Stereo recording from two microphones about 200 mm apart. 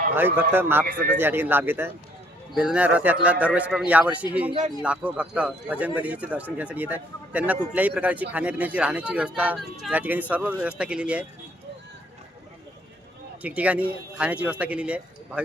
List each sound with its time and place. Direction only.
0.1 s speech: 10° right (ahead or behind)
13.4 s speech: 5° right (ahead or behind)